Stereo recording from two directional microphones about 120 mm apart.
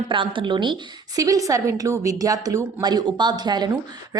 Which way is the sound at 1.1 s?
30° right (ahead or behind).